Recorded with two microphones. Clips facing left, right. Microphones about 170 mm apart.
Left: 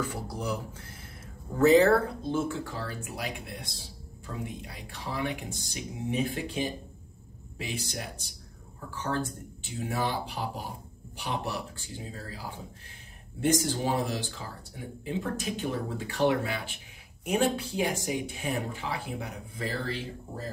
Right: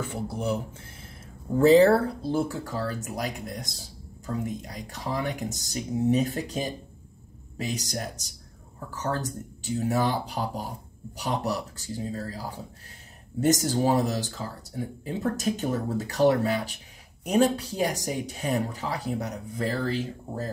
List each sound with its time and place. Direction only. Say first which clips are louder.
0.0 s speech: right 3 dB; 25° right (ahead or behind)
1.6 s speech: right 3 dB; 30° right (ahead or behind)